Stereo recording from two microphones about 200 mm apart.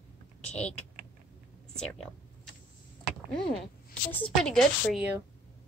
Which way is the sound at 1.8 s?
5° left (ahead or behind).